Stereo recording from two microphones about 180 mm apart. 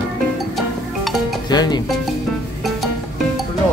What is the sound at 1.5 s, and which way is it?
Speech, 20° left (ahead or behind).